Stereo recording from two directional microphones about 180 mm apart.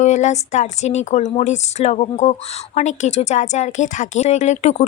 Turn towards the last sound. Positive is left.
turn(degrees=40)  # may be behind; listen again after turning